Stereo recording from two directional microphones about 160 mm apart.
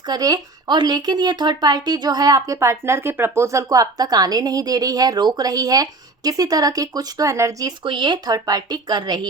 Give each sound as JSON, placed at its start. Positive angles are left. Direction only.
{"t": 0.1, "sound": "speech", "side_deg": -25}